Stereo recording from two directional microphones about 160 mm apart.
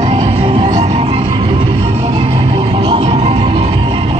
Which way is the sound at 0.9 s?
40° right (ahead or behind).